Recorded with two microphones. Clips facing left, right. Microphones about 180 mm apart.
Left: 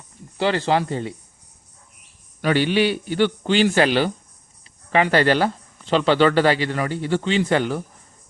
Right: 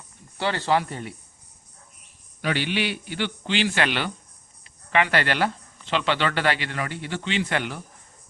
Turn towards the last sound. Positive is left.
turn(degrees=40)  # may be behind; listen again after turning